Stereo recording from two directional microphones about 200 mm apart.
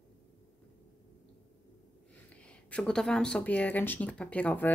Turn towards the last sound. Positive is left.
turn(degrees=10)  # may be behind; listen again after turning